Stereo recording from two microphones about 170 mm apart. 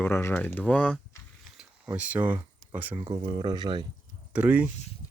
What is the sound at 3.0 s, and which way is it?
Speech, 30° right (ahead or behind).